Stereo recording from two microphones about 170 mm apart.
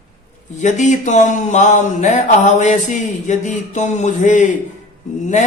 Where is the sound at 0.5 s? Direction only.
45° left (ahead or behind).